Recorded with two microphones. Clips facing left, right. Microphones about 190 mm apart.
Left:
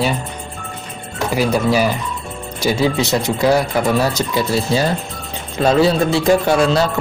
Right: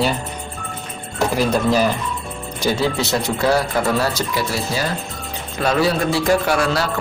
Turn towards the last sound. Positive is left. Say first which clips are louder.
# left 4 dB
turn(degrees=20)  # may be behind; listen again after turning